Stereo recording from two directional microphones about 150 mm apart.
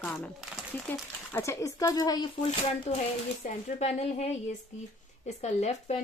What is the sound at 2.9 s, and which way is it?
A woman's voice, 45° left (ahead or behind).